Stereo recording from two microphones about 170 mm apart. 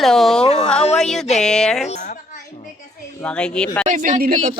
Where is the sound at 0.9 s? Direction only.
5° left (ahead or behind).